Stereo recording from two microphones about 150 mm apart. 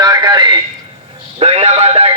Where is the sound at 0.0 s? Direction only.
30° right (ahead or behind).